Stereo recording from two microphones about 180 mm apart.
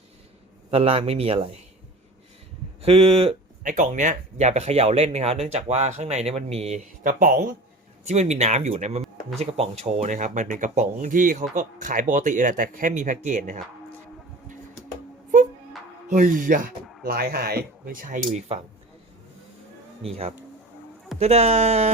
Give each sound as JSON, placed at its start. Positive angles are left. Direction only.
{"t": 0.7, "sound": "speech", "side_deg": -35}
{"t": 2.8, "sound": "speech", "side_deg": -30}
{"t": 3.6, "sound": "speech", "side_deg": -45}
{"t": 8.0, "sound": "speech", "side_deg": -40}
{"t": 16.0, "sound": "speech", "side_deg": -45}
{"t": 20.0, "sound": "speech", "side_deg": -35}